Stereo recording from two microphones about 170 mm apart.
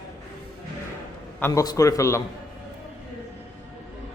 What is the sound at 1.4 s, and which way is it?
Speech, 15° left (ahead or behind).